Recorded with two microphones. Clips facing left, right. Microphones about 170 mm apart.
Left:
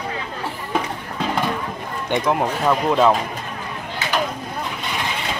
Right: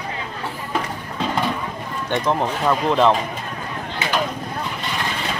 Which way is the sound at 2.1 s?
10° left (ahead or behind).